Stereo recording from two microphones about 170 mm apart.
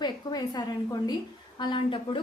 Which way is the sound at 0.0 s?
25° left (ahead or behind).